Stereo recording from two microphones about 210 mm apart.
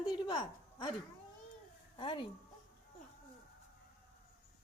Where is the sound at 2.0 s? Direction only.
20° left (ahead or behind).